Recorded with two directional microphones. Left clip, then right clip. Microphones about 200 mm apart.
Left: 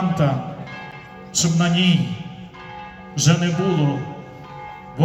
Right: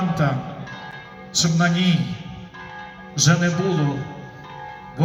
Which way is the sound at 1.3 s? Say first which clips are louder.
Even; 5° left (ahead or behind).